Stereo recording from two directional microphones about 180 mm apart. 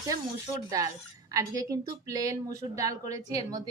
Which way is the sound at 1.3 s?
20° right (ahead or behind).